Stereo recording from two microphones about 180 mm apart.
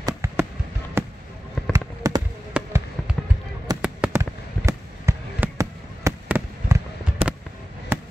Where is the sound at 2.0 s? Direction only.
20° right (ahead or behind).